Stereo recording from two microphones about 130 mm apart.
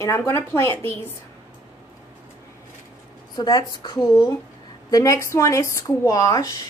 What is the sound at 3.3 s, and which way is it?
A woman's voice, 30° left (ahead or behind).